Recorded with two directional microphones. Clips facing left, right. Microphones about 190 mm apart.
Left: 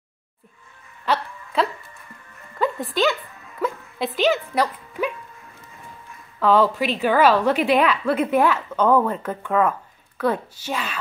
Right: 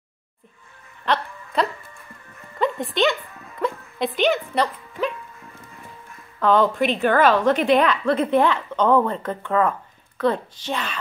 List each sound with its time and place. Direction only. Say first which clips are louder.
1.0 s a sound: even; 5° left (ahead or behind)
2.6 s speech: even; centre (ahead or behind)
6.4 s a woman's voice: even; 5° left (ahead or behind)